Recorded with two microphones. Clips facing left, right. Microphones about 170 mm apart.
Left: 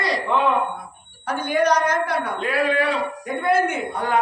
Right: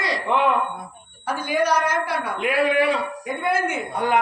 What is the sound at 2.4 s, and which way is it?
Speech, 20° right (ahead or behind).